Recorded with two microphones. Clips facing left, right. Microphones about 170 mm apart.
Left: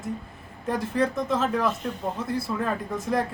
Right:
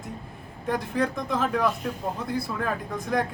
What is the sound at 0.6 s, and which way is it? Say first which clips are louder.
Speech: left 1 dB; 5° left (ahead or behind).